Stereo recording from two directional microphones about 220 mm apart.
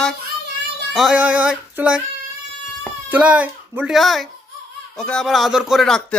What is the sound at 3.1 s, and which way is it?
A man's voice, 5° right (ahead or behind).